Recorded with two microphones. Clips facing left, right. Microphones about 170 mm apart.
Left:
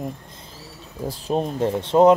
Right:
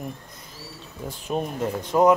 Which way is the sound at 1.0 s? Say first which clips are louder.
Left 4 dB; 30° left (ahead or behind).